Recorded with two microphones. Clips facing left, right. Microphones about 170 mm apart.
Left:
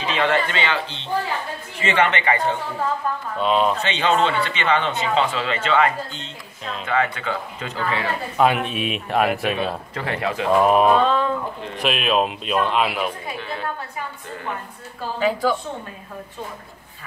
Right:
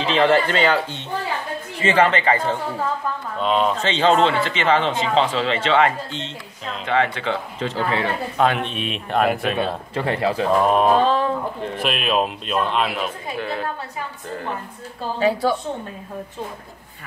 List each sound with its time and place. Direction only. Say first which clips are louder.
0.0 s a man's voice: right 4 dB; 35° right (ahead or behind)
3.3 s speech: even; centre (ahead or behind)
3.8 s a man's voice: right 3 dB; 35° right (ahead or behind)
8.4 s speech: left 2 dB; 5° left (ahead or behind)
9.9 s a man's voice: right 5 dB; 30° right (ahead or behind)
10.5 s speech: left 2 dB; 5° left (ahead or behind)
11.0 s a man's voice: right 1 dB; 35° right (ahead or behind)
11.7 s speech: left 2 dB; centre (ahead or behind)